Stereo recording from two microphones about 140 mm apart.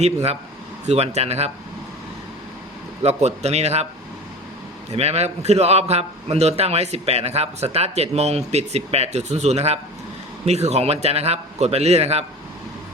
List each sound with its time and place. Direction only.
0.0 s a man's voice: 45° right (ahead or behind)
3.0 s a man's voice: 50° right (ahead or behind)
4.9 s a man's voice: 50° right (ahead or behind)